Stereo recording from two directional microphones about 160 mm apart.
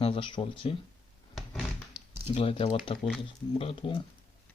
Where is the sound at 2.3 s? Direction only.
35° left (ahead or behind).